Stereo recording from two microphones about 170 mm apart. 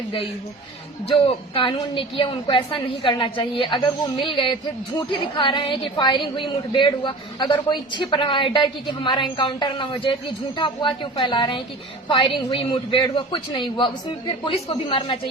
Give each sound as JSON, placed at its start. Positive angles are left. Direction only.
{"t": 1.1, "sound": "a woman's voice", "side_deg": 30}